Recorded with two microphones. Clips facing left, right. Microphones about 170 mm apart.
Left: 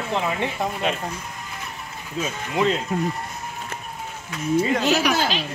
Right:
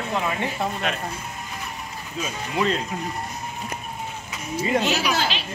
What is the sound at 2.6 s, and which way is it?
Speech, 20° left (ahead or behind).